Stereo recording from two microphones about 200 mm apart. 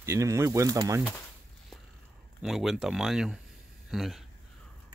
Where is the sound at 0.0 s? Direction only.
15° right (ahead or behind).